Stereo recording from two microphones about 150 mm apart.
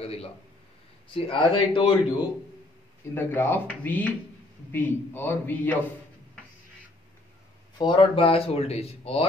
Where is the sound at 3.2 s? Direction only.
15° left (ahead or behind).